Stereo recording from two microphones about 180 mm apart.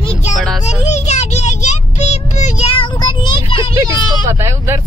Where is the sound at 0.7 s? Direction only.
40° left (ahead or behind).